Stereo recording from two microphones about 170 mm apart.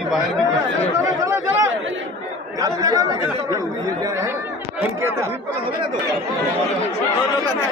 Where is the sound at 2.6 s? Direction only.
20° right (ahead or behind).